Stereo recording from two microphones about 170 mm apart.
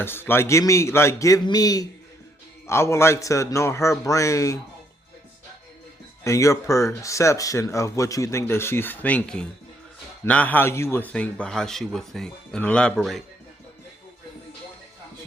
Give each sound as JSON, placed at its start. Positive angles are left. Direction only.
{"t": 0.0, "sound": "speech", "side_deg": 15}
{"t": 6.2, "sound": "speech", "side_deg": 15}